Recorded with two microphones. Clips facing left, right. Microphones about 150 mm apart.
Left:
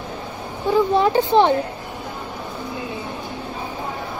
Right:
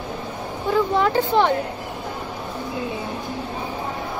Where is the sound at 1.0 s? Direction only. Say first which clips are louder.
Left 3 dB; 20° left (ahead or behind).